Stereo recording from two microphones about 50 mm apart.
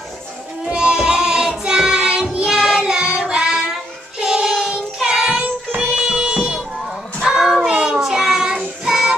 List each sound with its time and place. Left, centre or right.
0.7 s child singing: centre
5.4 s music: right
5.9 s music: centre
7.2 s child singing: centre
7.7 s child singing: right
8.0 s child singing: centre
8.8 s music: centre